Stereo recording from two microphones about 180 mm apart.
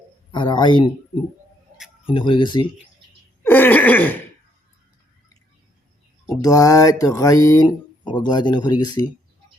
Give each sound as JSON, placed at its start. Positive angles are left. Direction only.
{"t": 0.3, "sound": "mantra", "side_deg": 25}
{"t": 2.0, "sound": "mantra", "side_deg": 25}
{"t": 3.4, "sound": "throat clearing", "side_deg": 10}
{"t": 6.2, "sound": "mantra", "side_deg": 20}